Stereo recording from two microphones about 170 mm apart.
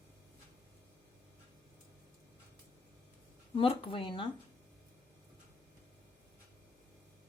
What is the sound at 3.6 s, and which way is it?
Speech, 30° left (ahead or behind).